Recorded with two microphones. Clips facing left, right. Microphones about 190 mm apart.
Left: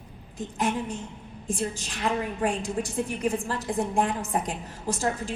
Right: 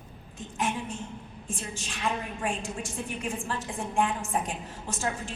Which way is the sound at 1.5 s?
40° left (ahead or behind).